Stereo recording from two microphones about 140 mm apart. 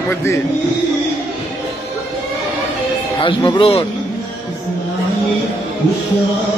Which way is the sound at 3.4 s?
30° left (ahead or behind).